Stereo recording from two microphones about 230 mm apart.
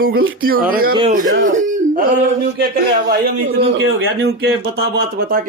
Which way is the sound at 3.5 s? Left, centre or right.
Right.